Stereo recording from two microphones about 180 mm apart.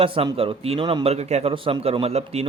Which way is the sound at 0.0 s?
30° right (ahead or behind).